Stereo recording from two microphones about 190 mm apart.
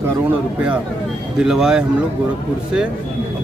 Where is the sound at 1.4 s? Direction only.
5° right (ahead or behind).